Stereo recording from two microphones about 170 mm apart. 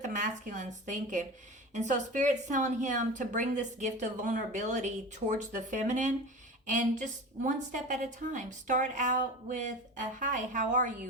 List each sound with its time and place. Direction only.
0.0 s a woman's voice: 45° right (ahead or behind)